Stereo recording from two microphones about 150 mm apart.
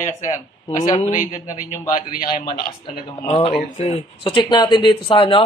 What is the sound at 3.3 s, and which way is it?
A man's voice, 40° left (ahead or behind).